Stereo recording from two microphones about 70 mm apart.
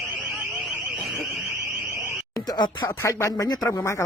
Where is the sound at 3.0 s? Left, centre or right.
Left.